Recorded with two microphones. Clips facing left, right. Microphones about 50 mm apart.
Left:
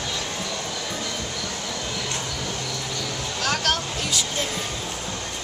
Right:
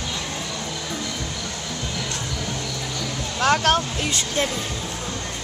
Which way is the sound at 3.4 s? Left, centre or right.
Right.